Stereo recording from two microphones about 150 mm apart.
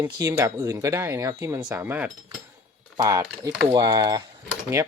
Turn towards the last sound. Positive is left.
turn(degrees=-20)  # may be behind; listen again after turning